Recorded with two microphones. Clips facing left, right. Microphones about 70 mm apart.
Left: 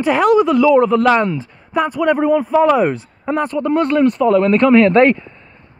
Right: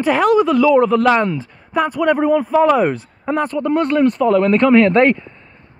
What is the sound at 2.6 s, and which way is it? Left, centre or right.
Speech, centre.